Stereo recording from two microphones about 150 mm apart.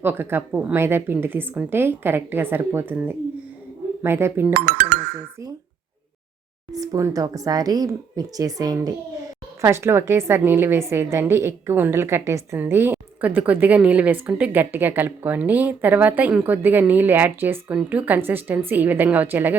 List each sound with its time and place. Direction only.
0.0 s a woman's voice: 15° right (ahead or behind)
4.5 s speech: 90° right
6.7 s a woman's voice: 25° right (ahead or behind)